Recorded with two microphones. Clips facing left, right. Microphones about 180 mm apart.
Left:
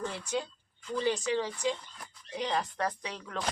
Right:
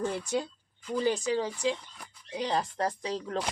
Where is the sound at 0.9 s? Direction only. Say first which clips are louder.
Right 2 dB; 40° right (ahead or behind).